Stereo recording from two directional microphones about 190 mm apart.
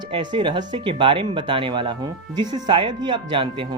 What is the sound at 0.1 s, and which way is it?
Speech, 25° right (ahead or behind).